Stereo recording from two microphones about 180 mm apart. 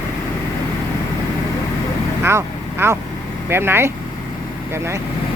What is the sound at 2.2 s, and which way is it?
Speech, 15° right (ahead or behind).